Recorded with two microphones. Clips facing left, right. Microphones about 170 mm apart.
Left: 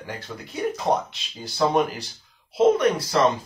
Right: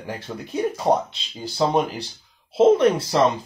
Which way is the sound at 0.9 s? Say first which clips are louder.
Right 3 dB; 10° right (ahead or behind).